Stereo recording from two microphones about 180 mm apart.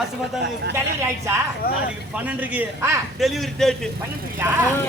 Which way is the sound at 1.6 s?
55° left (ahead or behind).